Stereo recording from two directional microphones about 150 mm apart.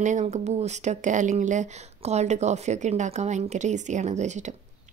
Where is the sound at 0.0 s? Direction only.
50° right (ahead or behind).